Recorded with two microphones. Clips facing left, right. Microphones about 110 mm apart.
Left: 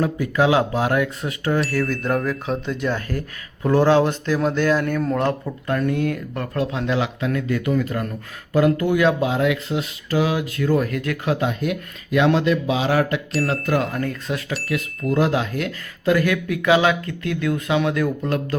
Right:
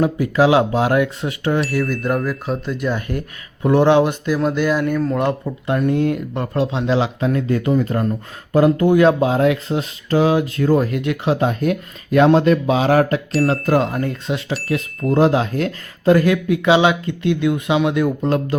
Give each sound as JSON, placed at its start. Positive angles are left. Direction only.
{"t": 0.0, "sound": "speech", "side_deg": -25}
{"t": 1.6, "sound": "a sound", "side_deg": -5}
{"t": 3.1, "sound": "speech", "side_deg": -20}
{"t": 5.6, "sound": "speech", "side_deg": -25}
{"t": 10.8, "sound": "speech", "side_deg": -25}
{"t": 11.3, "sound": "speech", "side_deg": -40}
{"t": 13.9, "sound": "speech", "side_deg": -25}